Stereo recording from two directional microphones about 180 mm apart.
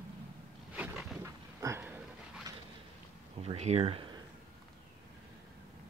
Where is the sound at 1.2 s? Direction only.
15° right (ahead or behind).